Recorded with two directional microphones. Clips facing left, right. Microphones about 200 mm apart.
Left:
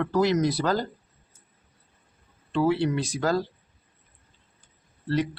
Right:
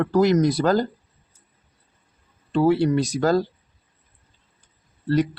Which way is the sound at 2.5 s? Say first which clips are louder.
Right 5 dB; 40° right (ahead or behind).